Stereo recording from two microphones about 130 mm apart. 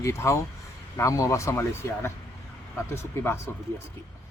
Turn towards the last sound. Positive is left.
turn(degrees=15)  # may be behind; listen again after turning